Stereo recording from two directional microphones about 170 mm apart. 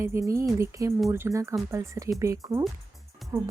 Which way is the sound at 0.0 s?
15° right (ahead or behind).